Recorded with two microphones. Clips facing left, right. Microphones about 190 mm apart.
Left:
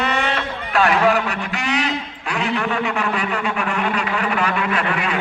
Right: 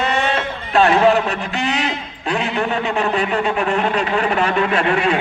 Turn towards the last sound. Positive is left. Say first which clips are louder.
# right 5 dB
turn(degrees=-25)  # may be behind; listen again after turning